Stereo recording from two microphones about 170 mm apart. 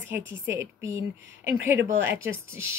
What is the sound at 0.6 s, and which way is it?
Speech, 15° right (ahead or behind).